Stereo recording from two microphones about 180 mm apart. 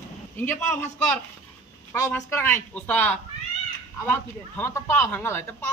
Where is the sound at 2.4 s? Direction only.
10° left (ahead or behind).